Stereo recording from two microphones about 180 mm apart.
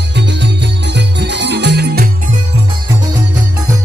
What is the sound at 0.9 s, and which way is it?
Music, 75° right (ahead or behind).